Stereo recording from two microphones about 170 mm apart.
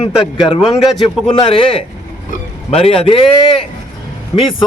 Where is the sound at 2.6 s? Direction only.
35° left (ahead or behind).